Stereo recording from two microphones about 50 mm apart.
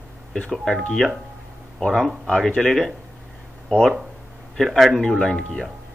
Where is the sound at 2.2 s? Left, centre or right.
Centre.